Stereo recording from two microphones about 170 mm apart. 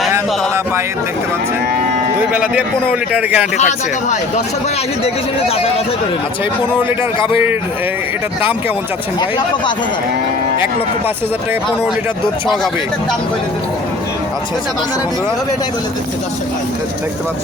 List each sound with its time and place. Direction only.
2.3 s a man's voice: 10° right (ahead or behind)
3.6 s speech: 45° left (ahead or behind)